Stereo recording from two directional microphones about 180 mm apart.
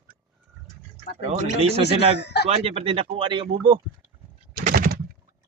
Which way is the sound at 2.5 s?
35° right (ahead or behind).